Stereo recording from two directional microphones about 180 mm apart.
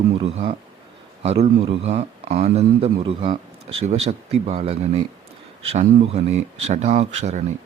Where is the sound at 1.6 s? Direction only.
35° right (ahead or behind).